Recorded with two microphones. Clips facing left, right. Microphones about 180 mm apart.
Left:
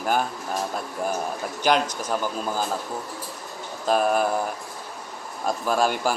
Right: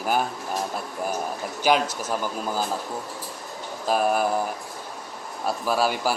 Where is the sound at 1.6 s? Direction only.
5° right (ahead or behind).